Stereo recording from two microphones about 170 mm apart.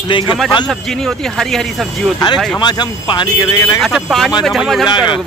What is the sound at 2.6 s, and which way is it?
Speech, 25° left (ahead or behind).